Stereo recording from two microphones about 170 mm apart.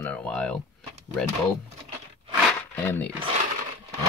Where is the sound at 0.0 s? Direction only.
10° left (ahead or behind).